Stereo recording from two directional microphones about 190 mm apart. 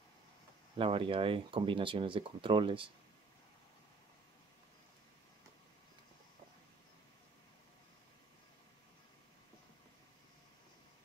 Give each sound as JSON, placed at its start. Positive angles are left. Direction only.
{"t": 0.7, "sound": "speech", "side_deg": -25}